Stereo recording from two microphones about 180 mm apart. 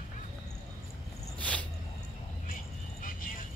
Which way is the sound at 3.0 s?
50° left (ahead or behind).